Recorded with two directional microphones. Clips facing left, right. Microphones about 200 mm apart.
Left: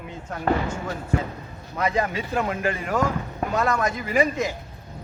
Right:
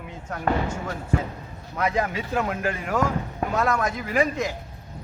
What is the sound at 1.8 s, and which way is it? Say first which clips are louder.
Speech: left 1 dB; 5° right (ahead or behind).